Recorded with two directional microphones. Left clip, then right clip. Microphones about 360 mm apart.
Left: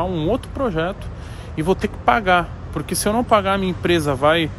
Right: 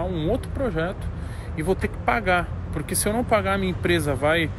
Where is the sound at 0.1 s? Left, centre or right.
Centre.